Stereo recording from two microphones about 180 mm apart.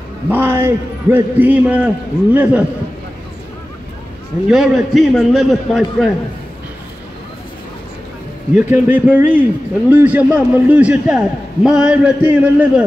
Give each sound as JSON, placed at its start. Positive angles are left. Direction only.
{"t": 0.3, "sound": "a man's voice", "side_deg": -15}
{"t": 4.5, "sound": "a man's voice", "side_deg": 0}
{"t": 8.5, "sound": "a man's voice", "side_deg": -10}